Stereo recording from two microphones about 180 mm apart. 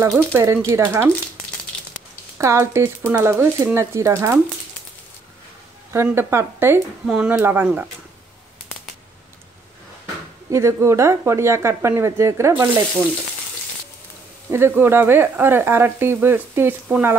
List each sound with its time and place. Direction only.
0.0 s speech: 15° right (ahead or behind)
2.3 s speech: 15° right (ahead or behind)
5.9 s speech: 15° right (ahead or behind)
10.5 s speech: 15° right (ahead or behind)
14.5 s speech: 15° right (ahead or behind)